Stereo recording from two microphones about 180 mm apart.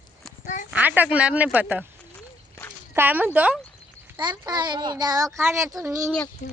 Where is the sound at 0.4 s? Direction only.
45° left (ahead or behind).